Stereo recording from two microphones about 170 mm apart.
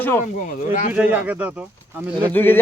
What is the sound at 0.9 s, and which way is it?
Speech, 10° right (ahead or behind).